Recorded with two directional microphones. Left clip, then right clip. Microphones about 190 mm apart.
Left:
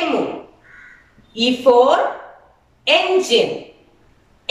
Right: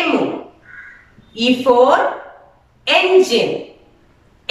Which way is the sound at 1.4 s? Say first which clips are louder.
Even; 15° left (ahead or behind).